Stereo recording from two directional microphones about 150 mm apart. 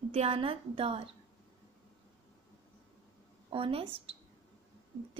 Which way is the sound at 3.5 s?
35° right (ahead or behind).